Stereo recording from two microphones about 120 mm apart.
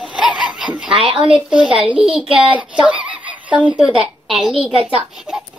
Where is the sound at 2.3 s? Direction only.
10° right (ahead or behind).